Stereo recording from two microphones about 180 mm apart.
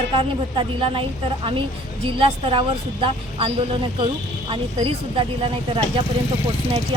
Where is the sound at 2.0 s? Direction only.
30° right (ahead or behind).